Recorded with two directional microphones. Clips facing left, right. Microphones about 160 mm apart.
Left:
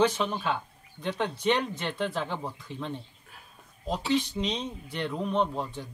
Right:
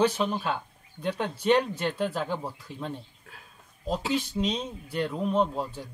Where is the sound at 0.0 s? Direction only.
5° right (ahead or behind).